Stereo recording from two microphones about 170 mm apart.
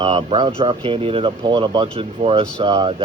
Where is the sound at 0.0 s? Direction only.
30° right (ahead or behind).